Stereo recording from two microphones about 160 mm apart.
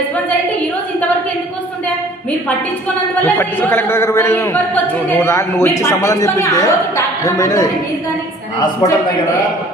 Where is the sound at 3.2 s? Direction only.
10° left (ahead or behind).